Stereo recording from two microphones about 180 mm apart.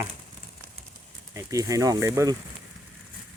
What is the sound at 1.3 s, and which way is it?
Speech, 20° right (ahead or behind).